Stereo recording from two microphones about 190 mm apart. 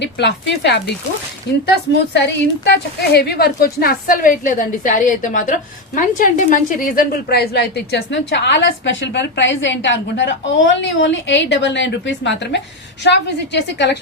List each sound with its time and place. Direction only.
0.0 s a woman's voice: 65° left (ahead or behind)